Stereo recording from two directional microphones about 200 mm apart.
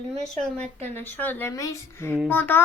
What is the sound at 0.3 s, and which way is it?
Speech, 5° left (ahead or behind).